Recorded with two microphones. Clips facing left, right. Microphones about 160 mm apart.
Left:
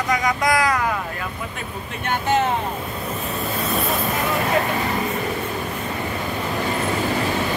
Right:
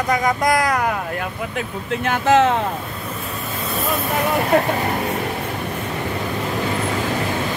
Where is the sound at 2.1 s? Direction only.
90° right.